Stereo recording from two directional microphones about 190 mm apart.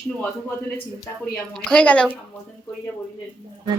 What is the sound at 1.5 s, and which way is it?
Speech, 5° left (ahead or behind).